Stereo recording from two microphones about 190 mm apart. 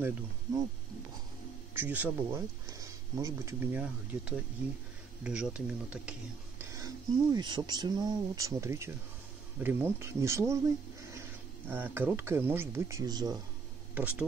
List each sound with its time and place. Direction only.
0.0 s speech: 10° right (ahead or behind)
1.8 s speech: 10° right (ahead or behind)
6.6 s a sound: 15° right (ahead or behind)
7.3 s speech: 20° right (ahead or behind)
13.9 s speech: 10° right (ahead or behind)